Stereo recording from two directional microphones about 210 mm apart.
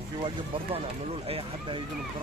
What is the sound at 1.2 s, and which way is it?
Speech, 30° right (ahead or behind).